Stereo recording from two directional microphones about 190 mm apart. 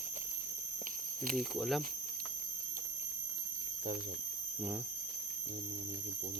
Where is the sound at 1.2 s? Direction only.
45° right (ahead or behind).